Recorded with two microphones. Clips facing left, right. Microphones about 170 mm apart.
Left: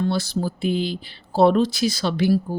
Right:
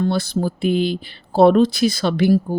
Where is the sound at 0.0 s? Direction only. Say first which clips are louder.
Right 3 dB; 55° right (ahead or behind).